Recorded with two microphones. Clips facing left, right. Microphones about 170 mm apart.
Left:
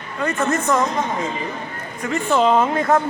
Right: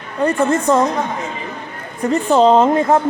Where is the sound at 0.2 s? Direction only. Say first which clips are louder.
Right 5 dB; 30° right (ahead or behind).